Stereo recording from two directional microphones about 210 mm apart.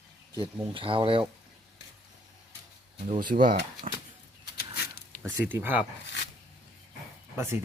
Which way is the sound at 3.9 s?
30° right (ahead or behind).